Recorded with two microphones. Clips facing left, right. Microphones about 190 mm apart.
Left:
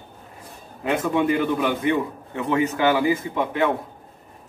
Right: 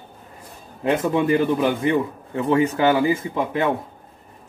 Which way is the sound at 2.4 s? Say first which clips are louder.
Right 3 dB; 30° right (ahead or behind).